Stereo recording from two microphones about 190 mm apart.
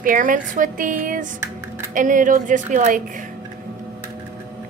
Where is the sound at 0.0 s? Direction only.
45° right (ahead or behind).